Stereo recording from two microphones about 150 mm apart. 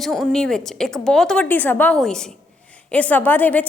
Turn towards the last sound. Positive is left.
turn(degrees=10)  # may be behind; listen again after turning